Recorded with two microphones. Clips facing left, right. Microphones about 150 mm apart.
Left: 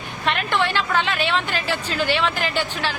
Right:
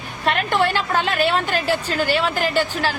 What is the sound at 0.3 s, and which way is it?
A woman's voice, 40° right (ahead or behind).